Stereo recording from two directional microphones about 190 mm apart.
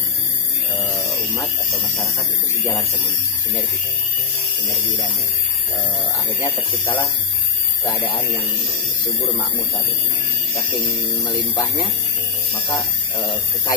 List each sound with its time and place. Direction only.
6.4 s speech: 25° left (ahead or behind)
11.0 s speech: 20° left (ahead or behind)